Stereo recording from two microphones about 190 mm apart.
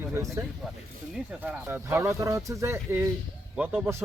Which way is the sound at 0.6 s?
Centre (ahead or behind).